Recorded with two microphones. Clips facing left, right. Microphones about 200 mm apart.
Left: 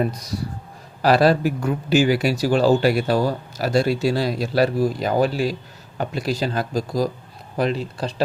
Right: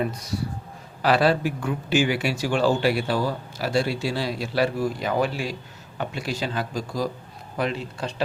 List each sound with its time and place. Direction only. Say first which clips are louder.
0.1 s speech: left 1 dB; 35° left (ahead or behind)